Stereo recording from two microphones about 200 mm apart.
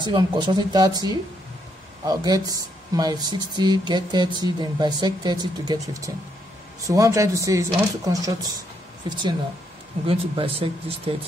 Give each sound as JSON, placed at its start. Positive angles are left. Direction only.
{"t": 0.1, "sound": "speech", "side_deg": -25}
{"t": 10.0, "sound": "speech", "side_deg": -25}